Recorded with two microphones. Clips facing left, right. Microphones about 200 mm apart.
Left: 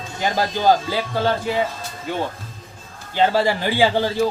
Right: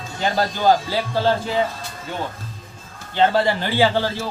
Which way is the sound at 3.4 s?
15° left (ahead or behind).